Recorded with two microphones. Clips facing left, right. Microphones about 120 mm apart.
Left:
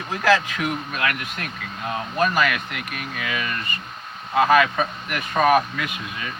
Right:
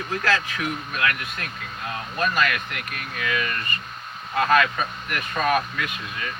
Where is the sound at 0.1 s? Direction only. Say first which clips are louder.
Left 6 dB; 15° left (ahead or behind).